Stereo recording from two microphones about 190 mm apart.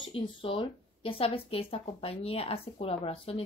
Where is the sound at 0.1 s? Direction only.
30° left (ahead or behind).